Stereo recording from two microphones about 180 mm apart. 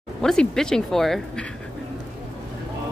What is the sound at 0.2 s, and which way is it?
Speech, 5° left (ahead or behind).